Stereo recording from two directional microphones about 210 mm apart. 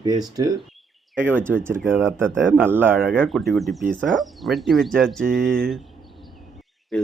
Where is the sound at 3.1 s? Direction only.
5° left (ahead or behind).